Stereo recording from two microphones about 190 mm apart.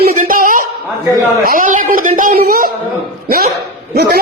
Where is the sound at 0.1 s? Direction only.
45° right (ahead or behind).